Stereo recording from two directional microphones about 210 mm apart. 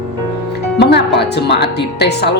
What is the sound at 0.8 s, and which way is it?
Speech, 50° left (ahead or behind).